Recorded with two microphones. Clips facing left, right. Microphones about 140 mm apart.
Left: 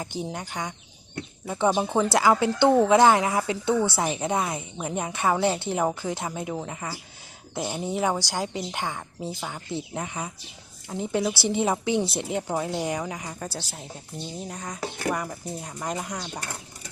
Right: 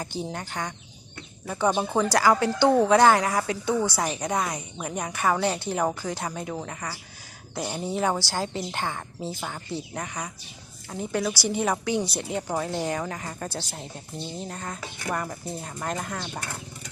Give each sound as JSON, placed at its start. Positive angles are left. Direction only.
{"t": 0.0, "sound": "a woman's voice", "side_deg": 20}
{"t": 1.5, "sound": "a woman's voice", "side_deg": 20}
{"t": 12.4, "sound": "a woman's voice", "side_deg": 10}